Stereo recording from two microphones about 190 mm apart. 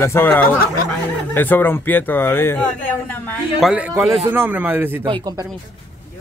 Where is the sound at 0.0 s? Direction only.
10° left (ahead or behind); by 5.0 s 10° right (ahead or behind).